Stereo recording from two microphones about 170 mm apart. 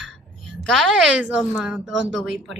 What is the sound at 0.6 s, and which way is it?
A woman's voice, 5° left (ahead or behind).